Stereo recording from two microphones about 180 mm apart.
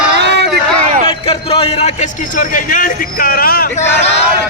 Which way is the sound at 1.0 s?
30° left (ahead or behind).